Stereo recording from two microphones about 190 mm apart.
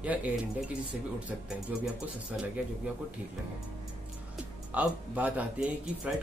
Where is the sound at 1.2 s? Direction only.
5° right (ahead or behind).